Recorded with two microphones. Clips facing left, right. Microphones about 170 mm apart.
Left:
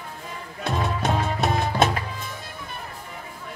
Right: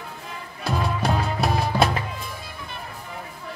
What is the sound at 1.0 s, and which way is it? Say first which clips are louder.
Music: left 1 dB; centre (ahead or behind).